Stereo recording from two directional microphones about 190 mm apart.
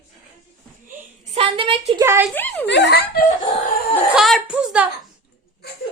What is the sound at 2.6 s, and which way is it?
Speech, 65° left (ahead or behind).